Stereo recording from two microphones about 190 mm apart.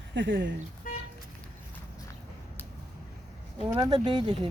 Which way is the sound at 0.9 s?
50° left (ahead or behind).